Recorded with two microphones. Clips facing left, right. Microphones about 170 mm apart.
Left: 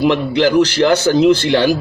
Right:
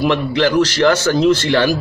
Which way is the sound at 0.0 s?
20° left (ahead or behind).